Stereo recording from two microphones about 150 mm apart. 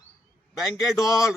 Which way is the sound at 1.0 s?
20° left (ahead or behind).